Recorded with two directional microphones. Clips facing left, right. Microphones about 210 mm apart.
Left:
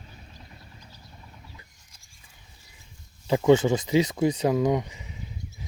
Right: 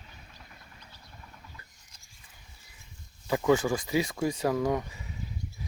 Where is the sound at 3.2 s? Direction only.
25° left (ahead or behind).